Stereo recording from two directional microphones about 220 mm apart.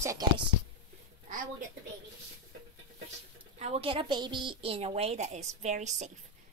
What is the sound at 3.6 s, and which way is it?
A woman's voice, 25° right (ahead or behind).